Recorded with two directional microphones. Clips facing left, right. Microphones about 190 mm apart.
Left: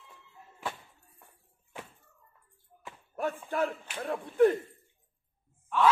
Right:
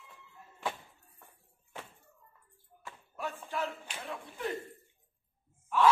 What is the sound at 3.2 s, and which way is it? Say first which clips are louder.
A man's voice: left 6 dB; 50° left (ahead or behind).